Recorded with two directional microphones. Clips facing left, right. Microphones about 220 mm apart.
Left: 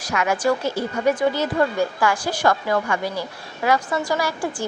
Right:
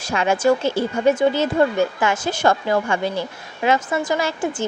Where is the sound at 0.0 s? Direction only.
25° right (ahead or behind).